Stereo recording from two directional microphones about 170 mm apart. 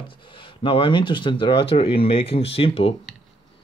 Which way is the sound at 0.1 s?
30° left (ahead or behind).